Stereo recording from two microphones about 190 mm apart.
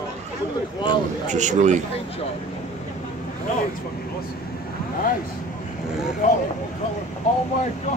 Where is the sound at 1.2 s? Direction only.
40° right (ahead or behind).